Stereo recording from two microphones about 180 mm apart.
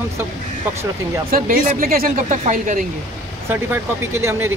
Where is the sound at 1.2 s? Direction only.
50° right (ahead or behind).